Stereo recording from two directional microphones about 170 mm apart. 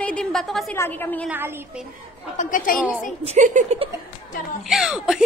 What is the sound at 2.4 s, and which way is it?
Speech, 55° left (ahead or behind).